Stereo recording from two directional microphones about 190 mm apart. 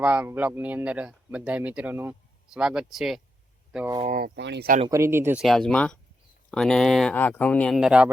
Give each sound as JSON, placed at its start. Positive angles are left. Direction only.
{"t": 0.0, "sound": "speech", "side_deg": -5}
{"t": 4.0, "sound": "speech", "side_deg": -45}
{"t": 4.4, "sound": "speech", "side_deg": -65}
{"t": 4.9, "sound": "speech", "side_deg": -15}
{"t": 5.4, "sound": "speech", "side_deg": 0}
{"t": 7.8, "sound": "speech", "side_deg": -5}